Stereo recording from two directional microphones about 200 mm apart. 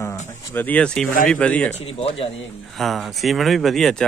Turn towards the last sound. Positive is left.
turn(degrees=5)  # may be behind; listen again after turning